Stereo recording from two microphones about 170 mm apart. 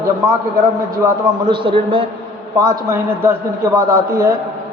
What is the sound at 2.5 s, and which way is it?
A man's voice, 20° right (ahead or behind).